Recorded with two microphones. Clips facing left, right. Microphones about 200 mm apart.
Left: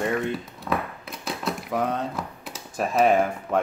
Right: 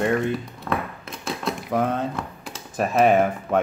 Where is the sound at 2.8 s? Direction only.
Centre (ahead or behind).